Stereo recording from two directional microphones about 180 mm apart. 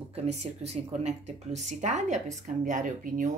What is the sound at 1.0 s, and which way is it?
Speech, 40° right (ahead or behind).